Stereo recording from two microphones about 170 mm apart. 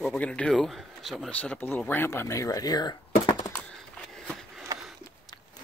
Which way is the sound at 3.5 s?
5° left (ahead or behind).